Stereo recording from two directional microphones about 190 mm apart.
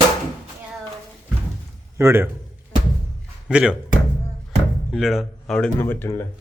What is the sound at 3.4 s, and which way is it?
Speech, 5° right (ahead or behind).